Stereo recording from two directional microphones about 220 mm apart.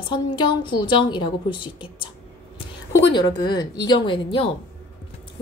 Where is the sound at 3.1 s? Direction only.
20° left (ahead or behind).